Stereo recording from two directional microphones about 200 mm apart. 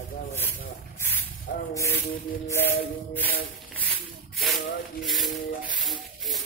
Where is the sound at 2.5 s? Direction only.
10° left (ahead or behind).